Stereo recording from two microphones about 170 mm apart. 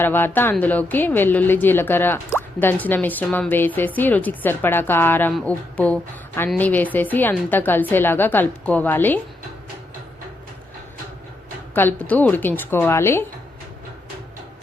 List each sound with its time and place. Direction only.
0.0 s speech: 10° left (ahead or behind)
11.7 s speech: 10° left (ahead or behind)